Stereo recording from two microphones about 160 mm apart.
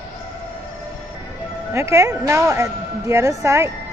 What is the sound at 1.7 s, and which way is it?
Speech, 15° right (ahead or behind).